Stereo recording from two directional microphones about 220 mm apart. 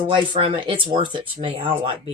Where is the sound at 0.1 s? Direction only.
20° right (ahead or behind).